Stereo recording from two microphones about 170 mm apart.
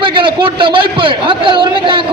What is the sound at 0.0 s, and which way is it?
A man's voice, 30° right (ahead or behind).